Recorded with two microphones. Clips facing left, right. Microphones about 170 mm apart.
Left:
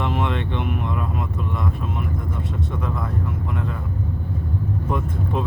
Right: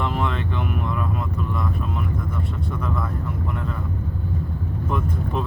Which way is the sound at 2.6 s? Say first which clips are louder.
Even; 20° left (ahead or behind).